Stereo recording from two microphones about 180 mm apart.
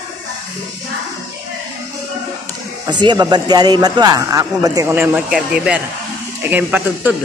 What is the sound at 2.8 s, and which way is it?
A man's voice, 25° right (ahead or behind).